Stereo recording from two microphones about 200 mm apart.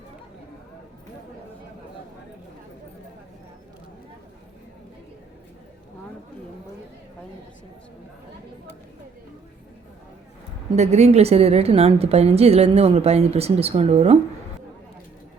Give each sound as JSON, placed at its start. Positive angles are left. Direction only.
{"t": 10.8, "sound": "a woman's voice", "side_deg": -35}